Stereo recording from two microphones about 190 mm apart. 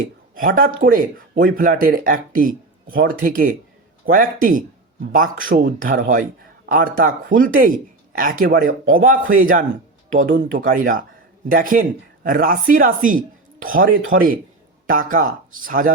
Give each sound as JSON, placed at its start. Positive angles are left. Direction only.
{"t": 0.3, "sound": "speech", "side_deg": -45}